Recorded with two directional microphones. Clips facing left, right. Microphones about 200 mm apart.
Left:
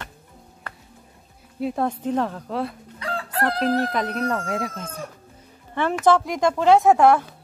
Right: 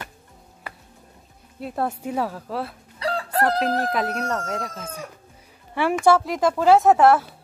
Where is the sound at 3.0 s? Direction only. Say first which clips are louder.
Right 3 dB; 40° right (ahead or behind).